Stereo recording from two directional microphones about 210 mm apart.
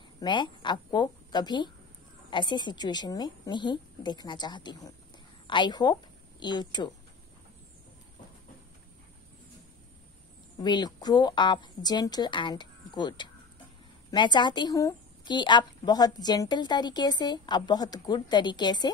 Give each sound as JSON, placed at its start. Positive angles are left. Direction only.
{"t": 0.2, "sound": "a woman's voice", "side_deg": 20}
{"t": 10.6, "sound": "a woman's voice", "side_deg": 20}